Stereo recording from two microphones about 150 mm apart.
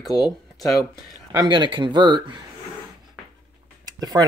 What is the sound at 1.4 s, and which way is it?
Speech, 30° right (ahead or behind).